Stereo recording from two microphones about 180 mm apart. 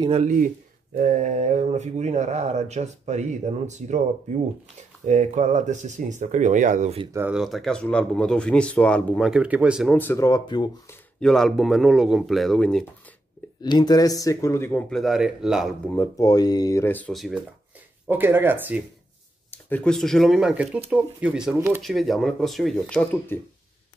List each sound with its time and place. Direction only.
0.0 s speech: 35° right (ahead or behind)
0.9 s speech: 45° right (ahead or behind)
5.0 s speech: 40° right (ahead or behind)
7.1 s speech: 15° right (ahead or behind)
7.3 s speech: centre (ahead or behind)
9.9 s speech: 15° left (ahead or behind)
10.9 s speech: 5° left (ahead or behind)
13.6 s speech: 20° left (ahead or behind); by 15.7 s centre (ahead or behind)
15.9 s speech: 15° left (ahead or behind); by 17.4 s centre (ahead or behind)
18.0 s speech: 10° right (ahead or behind)
19.5 s speech: 10° left (ahead or behind); by 21.8 s 10° right (ahead or behind)
21.8 s speech: centre (ahead or behind)